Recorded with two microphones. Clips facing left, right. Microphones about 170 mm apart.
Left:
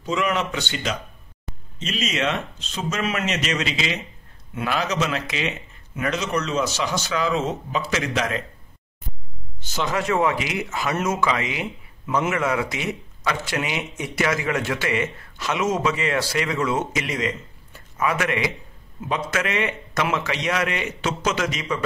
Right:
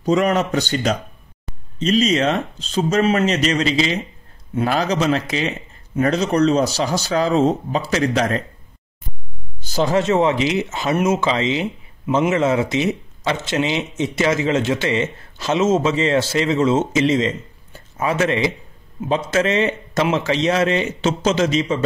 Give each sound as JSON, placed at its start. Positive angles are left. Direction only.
{"t": 0.0, "sound": "a man's voice", "side_deg": -40}
{"t": 9.7, "sound": "speech", "side_deg": -35}